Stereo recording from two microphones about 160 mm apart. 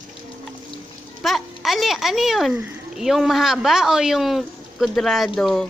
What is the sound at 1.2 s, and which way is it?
Speech, centre (ahead or behind).